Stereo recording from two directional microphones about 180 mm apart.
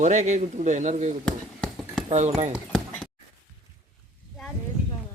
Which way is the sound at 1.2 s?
5° left (ahead or behind).